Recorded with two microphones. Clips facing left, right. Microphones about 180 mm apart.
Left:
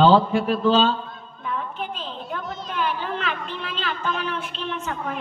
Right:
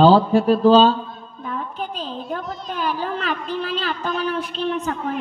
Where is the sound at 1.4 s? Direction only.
40° right (ahead or behind).